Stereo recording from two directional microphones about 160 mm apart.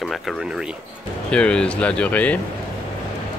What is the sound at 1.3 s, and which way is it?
Speech, 5° left (ahead or behind).